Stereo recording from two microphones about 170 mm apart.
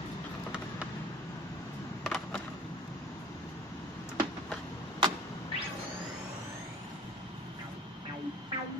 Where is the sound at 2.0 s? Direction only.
5° left (ahead or behind).